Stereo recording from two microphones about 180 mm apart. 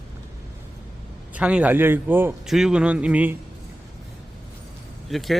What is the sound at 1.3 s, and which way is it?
A man's voice, 5° right (ahead or behind).